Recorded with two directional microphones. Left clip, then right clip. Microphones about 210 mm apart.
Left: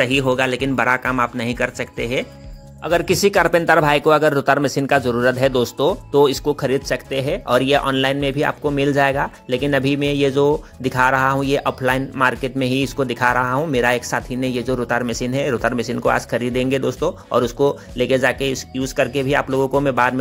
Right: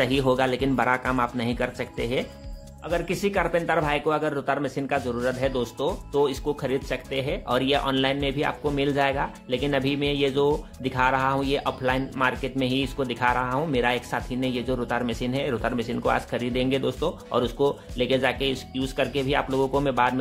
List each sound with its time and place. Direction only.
0.0 s speech: 15° left (ahead or behind)
2.8 s a man's voice: 40° left (ahead or behind); by 20.2 s 25° left (ahead or behind)